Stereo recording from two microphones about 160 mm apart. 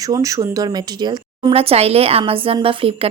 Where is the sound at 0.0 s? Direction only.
20° right (ahead or behind).